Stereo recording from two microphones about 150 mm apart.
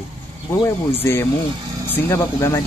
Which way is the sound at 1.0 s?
20° left (ahead or behind).